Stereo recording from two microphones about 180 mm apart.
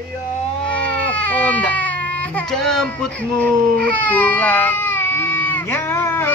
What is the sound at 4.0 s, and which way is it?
Speech, 10° left (ahead or behind).